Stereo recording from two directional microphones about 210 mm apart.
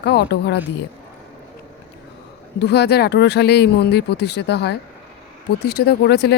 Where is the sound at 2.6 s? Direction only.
50° left (ahead or behind).